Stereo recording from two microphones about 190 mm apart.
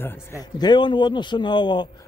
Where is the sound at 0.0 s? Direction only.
15° left (ahead or behind).